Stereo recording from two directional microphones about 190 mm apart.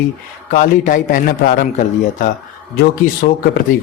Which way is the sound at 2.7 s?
55° left (ahead or behind).